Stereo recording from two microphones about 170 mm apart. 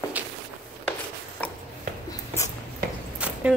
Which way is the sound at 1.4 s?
10° left (ahead or behind).